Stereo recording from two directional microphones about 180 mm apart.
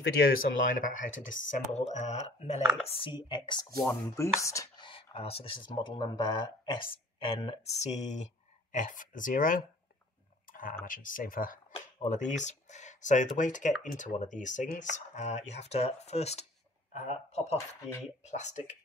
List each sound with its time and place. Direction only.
0.0 s speech: 60° left (ahead or behind)
10.4 s clicking: 50° left (ahead or behind)
10.9 s speech: 50° left (ahead or behind)